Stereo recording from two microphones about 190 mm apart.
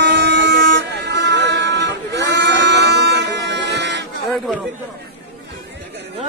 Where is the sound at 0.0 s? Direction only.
65° right (ahead or behind).